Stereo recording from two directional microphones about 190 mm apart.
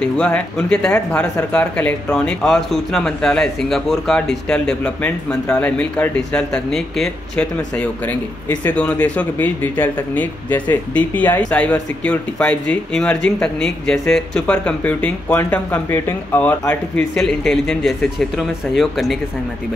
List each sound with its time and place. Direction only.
0.0 s speech: 5° left (ahead or behind)